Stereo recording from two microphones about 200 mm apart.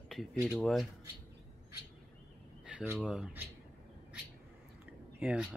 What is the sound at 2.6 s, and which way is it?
Speech, 5° right (ahead or behind).